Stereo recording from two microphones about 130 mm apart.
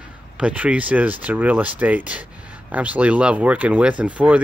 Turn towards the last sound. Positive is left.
turn(degrees=-10)  # may be behind; listen again after turning